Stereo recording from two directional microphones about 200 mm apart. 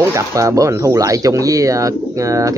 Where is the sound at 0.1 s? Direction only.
15° right (ahead or behind).